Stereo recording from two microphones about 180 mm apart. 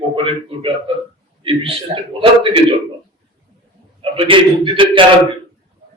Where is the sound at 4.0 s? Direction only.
30° right (ahead or behind).